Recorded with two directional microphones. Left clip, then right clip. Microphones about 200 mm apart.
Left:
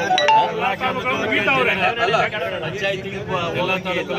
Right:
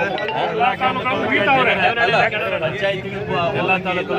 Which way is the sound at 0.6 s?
15° right (ahead or behind).